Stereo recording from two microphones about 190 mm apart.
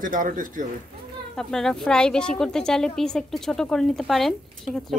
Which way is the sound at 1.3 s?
5° left (ahead or behind).